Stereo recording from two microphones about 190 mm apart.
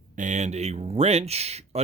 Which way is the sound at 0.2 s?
40° right (ahead or behind).